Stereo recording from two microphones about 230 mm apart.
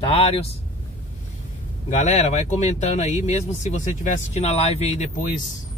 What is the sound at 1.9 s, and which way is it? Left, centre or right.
Speech, left.